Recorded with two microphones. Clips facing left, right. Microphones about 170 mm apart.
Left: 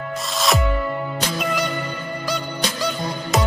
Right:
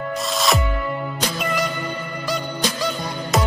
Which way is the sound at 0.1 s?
Centre (ahead or behind).